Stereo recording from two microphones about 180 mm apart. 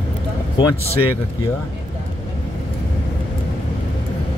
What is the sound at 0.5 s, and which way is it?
Speech, 25° left (ahead or behind).